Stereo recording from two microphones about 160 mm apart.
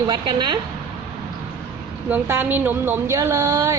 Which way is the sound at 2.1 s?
15° right (ahead or behind).